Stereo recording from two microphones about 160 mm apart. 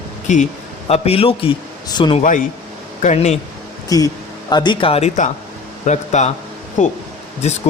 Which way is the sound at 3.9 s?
25° left (ahead or behind).